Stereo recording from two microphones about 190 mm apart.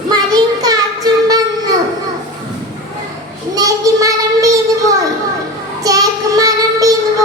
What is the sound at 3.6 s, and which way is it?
Child singing, 20° right (ahead or behind).